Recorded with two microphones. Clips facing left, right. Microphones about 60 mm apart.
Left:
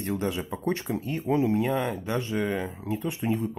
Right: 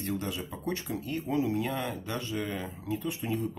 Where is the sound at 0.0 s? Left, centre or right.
Left.